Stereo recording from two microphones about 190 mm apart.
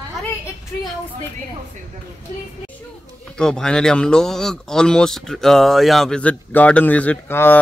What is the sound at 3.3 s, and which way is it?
Speech, 5° left (ahead or behind).